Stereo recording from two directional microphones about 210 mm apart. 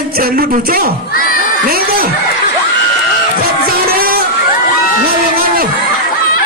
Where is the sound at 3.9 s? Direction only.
45° right (ahead or behind).